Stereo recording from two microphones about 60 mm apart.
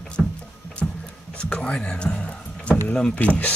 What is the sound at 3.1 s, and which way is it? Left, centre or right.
Speech, left.